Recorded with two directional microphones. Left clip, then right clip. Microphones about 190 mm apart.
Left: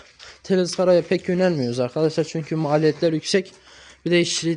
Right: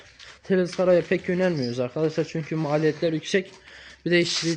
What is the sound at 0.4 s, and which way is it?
A man's voice, 15° left (ahead or behind).